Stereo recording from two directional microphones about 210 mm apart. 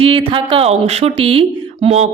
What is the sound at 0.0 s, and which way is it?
A woman's voice, 25° right (ahead or behind).